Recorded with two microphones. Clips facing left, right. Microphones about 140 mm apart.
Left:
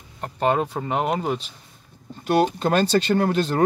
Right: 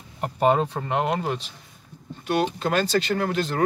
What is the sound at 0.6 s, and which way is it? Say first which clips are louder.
Speech: left 1 dB; 10° left (ahead or behind).